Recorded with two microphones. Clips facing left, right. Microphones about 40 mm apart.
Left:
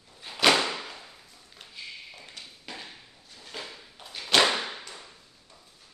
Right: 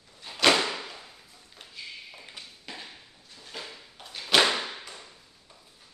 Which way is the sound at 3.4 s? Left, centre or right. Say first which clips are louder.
Left 1 dB; centre.